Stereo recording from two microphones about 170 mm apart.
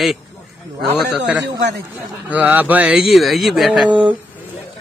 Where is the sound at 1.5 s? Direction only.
80° right.